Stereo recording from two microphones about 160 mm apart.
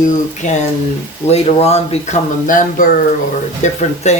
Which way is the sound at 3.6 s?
45° left (ahead or behind).